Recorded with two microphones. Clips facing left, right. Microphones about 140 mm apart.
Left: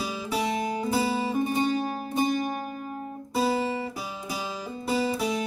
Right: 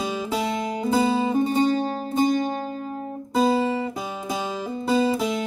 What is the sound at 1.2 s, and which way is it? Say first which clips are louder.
Music: right 5 dB; 25° right (ahead or behind).